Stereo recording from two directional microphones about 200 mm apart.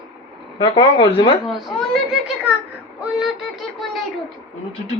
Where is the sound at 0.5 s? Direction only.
25° left (ahead or behind).